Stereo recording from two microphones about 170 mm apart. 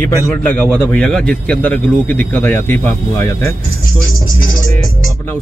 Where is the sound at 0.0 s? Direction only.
10° left (ahead or behind).